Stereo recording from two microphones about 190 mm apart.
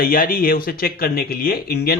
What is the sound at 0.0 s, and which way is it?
Speech, 50° left (ahead or behind).